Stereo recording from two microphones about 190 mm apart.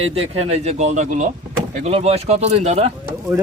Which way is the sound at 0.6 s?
35° right (ahead or behind).